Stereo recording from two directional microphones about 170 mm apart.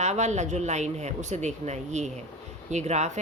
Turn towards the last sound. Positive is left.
turn(degrees=-40)  # may be behind; listen again after turning